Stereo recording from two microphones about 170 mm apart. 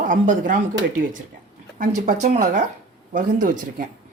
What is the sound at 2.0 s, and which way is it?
Speech, 45° right (ahead or behind).